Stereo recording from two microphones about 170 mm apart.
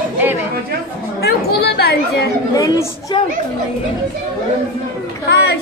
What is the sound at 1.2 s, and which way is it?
Speech, 70° left (ahead or behind).